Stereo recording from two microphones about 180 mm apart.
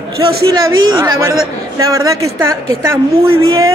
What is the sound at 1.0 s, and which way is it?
A man's voice, 20° right (ahead or behind).